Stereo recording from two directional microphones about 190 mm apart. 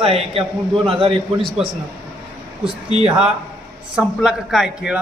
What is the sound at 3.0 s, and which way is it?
A man's voice, 5° right (ahead or behind).